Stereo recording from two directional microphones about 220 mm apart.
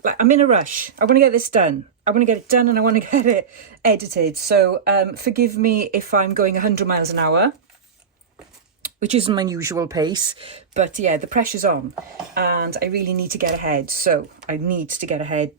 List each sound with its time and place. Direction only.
0.0 s speech: 35° right (ahead or behind)
9.0 s speech: 30° right (ahead or behind)